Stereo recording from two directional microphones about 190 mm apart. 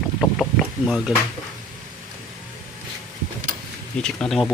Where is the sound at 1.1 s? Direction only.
Centre (ahead or behind).